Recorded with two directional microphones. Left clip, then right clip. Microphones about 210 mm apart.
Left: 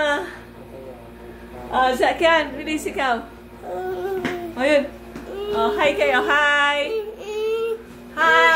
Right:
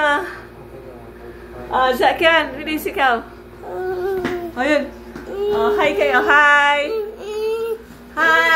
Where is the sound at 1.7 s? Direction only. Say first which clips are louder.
Right 3 dB; centre (ahead or behind).